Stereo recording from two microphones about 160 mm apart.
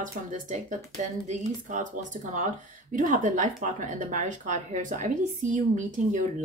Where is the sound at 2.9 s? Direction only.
55° right (ahead or behind).